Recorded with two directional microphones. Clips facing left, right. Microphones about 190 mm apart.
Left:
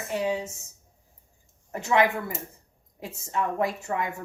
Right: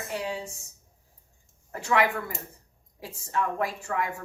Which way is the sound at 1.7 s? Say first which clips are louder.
Left 2 dB; 20° left (ahead or behind).